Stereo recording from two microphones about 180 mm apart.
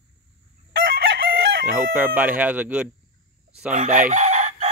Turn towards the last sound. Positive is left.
turn(degrees=-40)  # may be behind; listen again after turning